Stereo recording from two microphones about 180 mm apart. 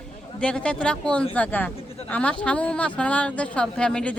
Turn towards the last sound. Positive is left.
turn(degrees=5)  # may be behind; listen again after turning